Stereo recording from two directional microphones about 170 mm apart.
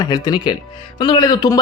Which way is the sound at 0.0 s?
25° left (ahead or behind).